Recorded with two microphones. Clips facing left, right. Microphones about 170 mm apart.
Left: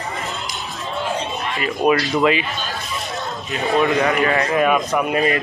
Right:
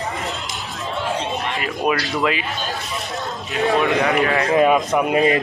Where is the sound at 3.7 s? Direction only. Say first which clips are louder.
Left 1 dB; 5° right (ahead or behind).